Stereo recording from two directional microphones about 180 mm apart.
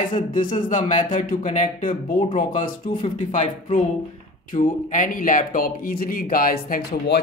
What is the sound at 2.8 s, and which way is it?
Speech, 30° left (ahead or behind).